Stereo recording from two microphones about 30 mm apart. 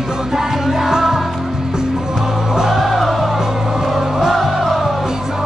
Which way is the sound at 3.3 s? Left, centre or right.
Centre.